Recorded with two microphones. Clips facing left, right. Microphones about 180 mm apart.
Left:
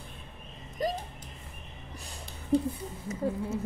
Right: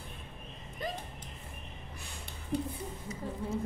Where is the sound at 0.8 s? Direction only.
40° left (ahead or behind).